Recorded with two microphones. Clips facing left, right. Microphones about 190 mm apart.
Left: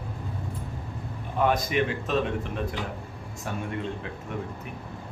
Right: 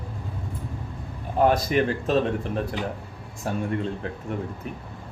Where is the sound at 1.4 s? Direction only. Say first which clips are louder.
Right 4 dB; 40° right (ahead or behind).